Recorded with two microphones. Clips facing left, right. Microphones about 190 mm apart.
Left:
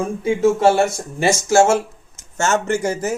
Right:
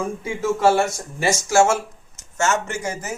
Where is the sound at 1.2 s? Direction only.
30° left (ahead or behind).